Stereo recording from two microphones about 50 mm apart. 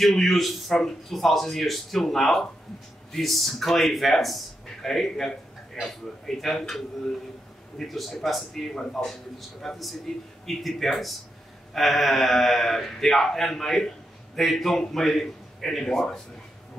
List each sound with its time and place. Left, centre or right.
0.0 s speech: centre